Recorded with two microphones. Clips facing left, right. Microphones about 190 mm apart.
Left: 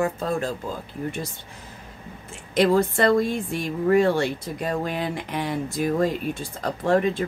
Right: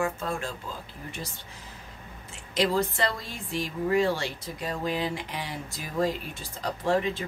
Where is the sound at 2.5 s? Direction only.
55° left (ahead or behind).